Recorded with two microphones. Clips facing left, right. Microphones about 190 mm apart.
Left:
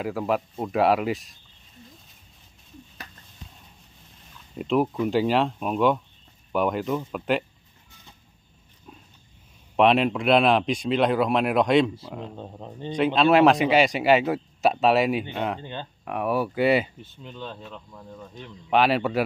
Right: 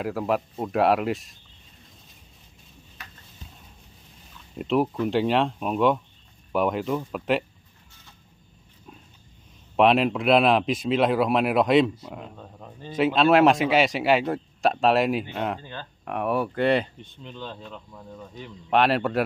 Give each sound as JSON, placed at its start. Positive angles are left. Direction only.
{"t": 0.0, "sound": "speech", "side_deg": 0}
{"t": 3.0, "sound": "a sound", "side_deg": 35}
{"t": 4.3, "sound": "a sound", "side_deg": 0}
{"t": 5.0, "sound": "speech", "side_deg": 0}
{"t": 9.8, "sound": "speech", "side_deg": 0}
{"t": 12.4, "sound": "speech", "side_deg": 25}
{"t": 12.9, "sound": "speech", "side_deg": 0}
{"t": 15.6, "sound": "speech", "side_deg": 20}
{"t": 16.1, "sound": "speech", "side_deg": 0}